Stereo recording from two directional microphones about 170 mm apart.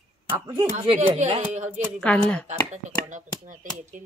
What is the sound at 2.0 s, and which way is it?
Speech, 5° left (ahead or behind).